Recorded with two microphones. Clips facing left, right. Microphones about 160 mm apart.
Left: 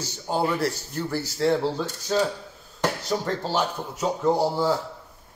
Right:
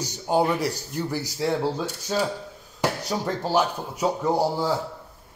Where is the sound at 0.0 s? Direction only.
15° right (ahead or behind).